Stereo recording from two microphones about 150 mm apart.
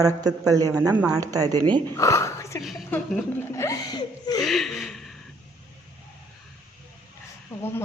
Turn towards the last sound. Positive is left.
turn(degrees=15)  # may be behind; listen again after turning